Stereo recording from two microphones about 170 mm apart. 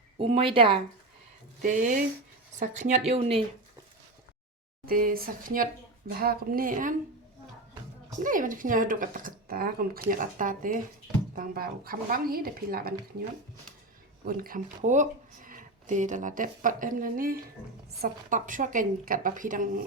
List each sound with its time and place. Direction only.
0.2 s a woman's voice: 35° right (ahead or behind)
1.6 s a woman's voice: 50° right (ahead or behind)
4.9 s a woman's voice: 60° right (ahead or behind)
8.2 s a woman's voice: 50° right (ahead or behind)
14.3 s a woman's voice: 60° right (ahead or behind)
14.8 s speech: 45° right (ahead or behind)